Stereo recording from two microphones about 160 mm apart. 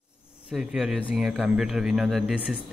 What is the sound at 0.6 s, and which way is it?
Speech, 5° right (ahead or behind).